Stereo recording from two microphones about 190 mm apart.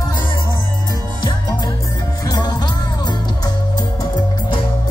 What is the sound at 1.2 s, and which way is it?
Music, 20° left (ahead or behind).